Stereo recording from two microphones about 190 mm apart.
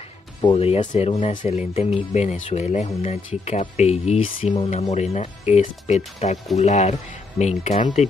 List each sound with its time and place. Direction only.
0.4 s speech: 30° left (ahead or behind)